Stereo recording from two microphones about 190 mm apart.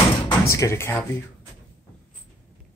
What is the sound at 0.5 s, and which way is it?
Speech, 15° left (ahead or behind).